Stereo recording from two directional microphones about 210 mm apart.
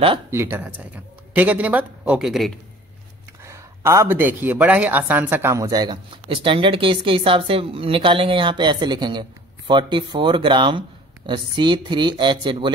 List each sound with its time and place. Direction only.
0.3 s speech: 10° right (ahead or behind)
3.4 s speech: 15° right (ahead or behind)